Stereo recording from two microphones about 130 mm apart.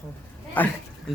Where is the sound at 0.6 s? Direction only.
15° left (ahead or behind).